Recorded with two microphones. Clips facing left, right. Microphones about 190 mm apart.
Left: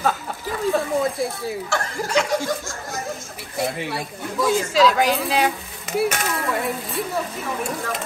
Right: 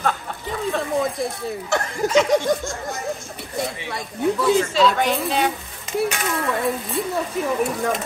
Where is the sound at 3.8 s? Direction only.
5° left (ahead or behind).